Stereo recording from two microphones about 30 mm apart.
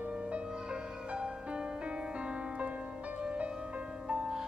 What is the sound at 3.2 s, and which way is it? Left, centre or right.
Music, right.